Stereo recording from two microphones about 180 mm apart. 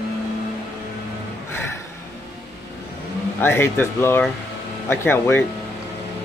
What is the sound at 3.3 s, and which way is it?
Speech, 10° left (ahead or behind).